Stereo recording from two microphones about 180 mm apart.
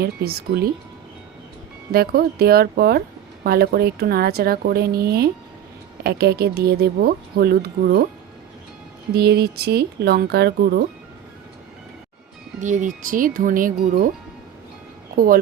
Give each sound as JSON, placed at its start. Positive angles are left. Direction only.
{"t": 0.0, "sound": "a woman's voice", "side_deg": -60}
{"t": 1.9, "sound": "a woman's voice", "side_deg": -60}
{"t": 9.1, "sound": "a woman's voice", "side_deg": -65}
{"t": 12.5, "sound": "speech", "side_deg": -45}
{"t": 15.1, "sound": "speech", "side_deg": -50}